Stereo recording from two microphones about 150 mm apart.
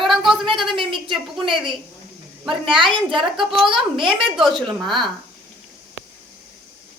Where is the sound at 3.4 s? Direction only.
Centre (ahead or behind).